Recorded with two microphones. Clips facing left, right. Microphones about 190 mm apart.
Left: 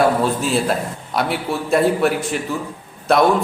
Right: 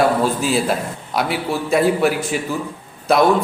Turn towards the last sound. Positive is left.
turn(degrees=0)  # may be behind; listen again after turning